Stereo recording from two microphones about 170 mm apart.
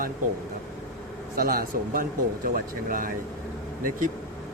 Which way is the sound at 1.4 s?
60° right (ahead or behind).